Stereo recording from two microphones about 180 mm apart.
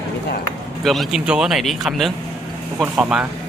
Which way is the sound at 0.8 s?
Centre (ahead or behind).